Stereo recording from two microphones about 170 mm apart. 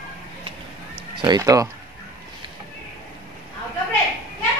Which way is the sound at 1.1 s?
30° right (ahead or behind).